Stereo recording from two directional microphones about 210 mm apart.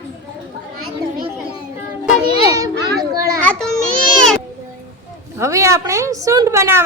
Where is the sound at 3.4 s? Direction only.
5° left (ahead or behind).